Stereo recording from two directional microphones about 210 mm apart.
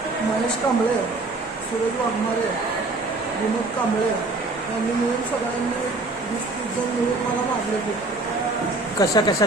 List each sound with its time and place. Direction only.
9.0 s speech: 20° left (ahead or behind)